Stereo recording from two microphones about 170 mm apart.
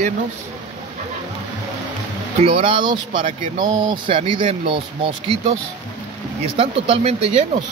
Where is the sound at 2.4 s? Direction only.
35° right (ahead or behind).